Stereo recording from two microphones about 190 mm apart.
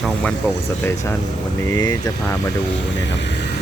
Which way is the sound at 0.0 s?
5° left (ahead or behind).